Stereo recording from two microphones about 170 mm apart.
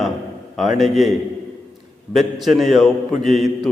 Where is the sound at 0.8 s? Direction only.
Centre (ahead or behind).